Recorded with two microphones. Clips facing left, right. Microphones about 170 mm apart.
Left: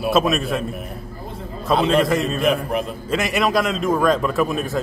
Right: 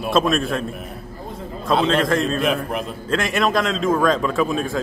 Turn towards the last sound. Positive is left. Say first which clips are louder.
# even
turn(degrees=5)  # may be behind; listen again after turning